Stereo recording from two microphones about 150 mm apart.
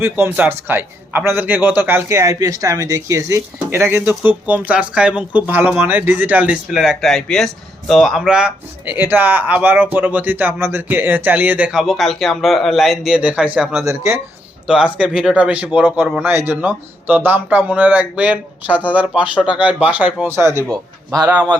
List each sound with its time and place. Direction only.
0.0 s a man's voice: 15° right (ahead or behind)
13.8 s speech: 20° right (ahead or behind)
14.9 s a man's voice: 5° right (ahead or behind); by 21.2 s 25° right (ahead or behind)
21.2 s a man's voice: 10° right (ahead or behind)